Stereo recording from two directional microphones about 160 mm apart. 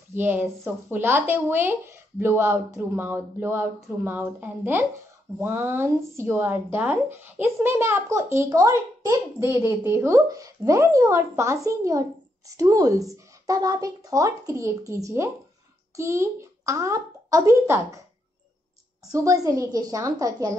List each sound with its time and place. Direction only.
0.1 s a child's voice: 10° right (ahead or behind)
19.0 s speech: 20° right (ahead or behind)